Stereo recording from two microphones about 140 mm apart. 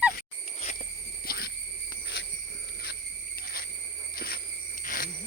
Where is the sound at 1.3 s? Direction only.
90° left.